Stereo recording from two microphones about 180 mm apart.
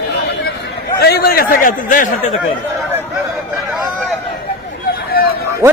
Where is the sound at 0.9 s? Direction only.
60° left (ahead or behind); by 2.3 s 45° left (ahead or behind).